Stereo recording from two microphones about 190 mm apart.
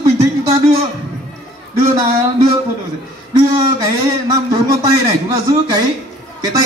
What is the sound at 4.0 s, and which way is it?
Speech, 15° right (ahead or behind).